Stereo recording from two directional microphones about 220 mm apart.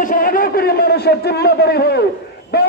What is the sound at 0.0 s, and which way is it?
A man's voice, 40° left (ahead or behind).